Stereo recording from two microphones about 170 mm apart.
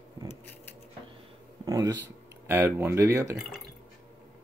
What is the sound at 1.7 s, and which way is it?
Speech, 20° right (ahead or behind).